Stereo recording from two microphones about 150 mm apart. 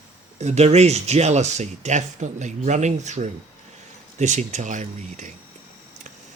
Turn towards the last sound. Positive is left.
turn(degrees=-55)  # may be behind; listen again after turning